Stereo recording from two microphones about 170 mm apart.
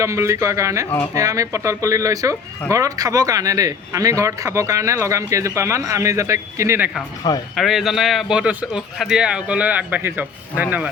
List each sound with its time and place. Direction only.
0.0 s speech: 15° right (ahead or behind)
7.5 s a man's voice: centre (ahead or behind)